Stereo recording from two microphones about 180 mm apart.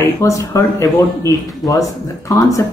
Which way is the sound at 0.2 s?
15° left (ahead or behind).